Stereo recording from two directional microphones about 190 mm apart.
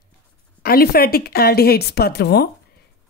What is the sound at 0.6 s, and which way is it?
A woman's voice, 50° left (ahead or behind).